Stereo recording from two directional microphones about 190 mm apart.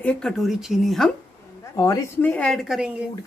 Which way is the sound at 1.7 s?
15° left (ahead or behind).